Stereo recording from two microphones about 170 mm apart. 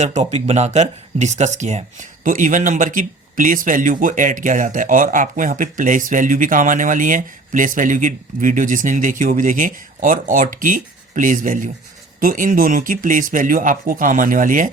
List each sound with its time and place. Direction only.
0.0 s speech: 45° right (ahead or behind)